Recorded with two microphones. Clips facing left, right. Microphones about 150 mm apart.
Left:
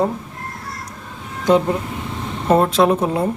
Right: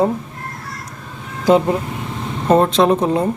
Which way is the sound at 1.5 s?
Centre (ahead or behind).